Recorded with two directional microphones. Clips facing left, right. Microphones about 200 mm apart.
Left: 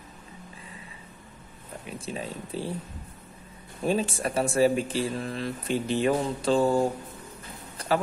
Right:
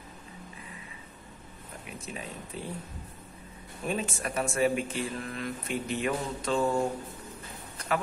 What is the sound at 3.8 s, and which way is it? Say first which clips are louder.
Speech: left 6 dB; 30° left (ahead or behind).